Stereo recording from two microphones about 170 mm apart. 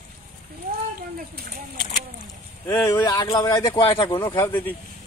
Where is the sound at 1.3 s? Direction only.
60° right (ahead or behind).